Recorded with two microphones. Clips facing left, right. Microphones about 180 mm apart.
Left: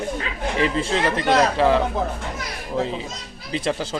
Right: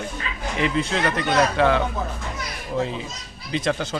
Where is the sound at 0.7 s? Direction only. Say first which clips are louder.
Left 1 dB; 30° left (ahead or behind).